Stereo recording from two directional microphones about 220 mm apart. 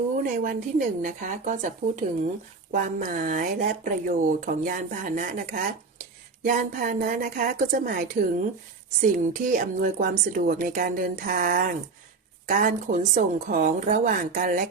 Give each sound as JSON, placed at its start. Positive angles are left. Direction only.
{"t": 0.2, "sound": "speech", "side_deg": -40}
{"t": 9.5, "sound": "speech", "side_deg": -35}